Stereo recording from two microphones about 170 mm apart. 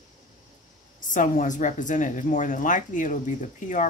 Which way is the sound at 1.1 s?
50° left (ahead or behind).